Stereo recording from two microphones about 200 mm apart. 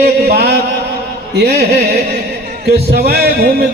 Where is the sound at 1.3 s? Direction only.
55° right (ahead or behind).